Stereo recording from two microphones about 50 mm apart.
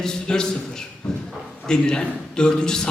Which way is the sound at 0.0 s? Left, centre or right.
Centre.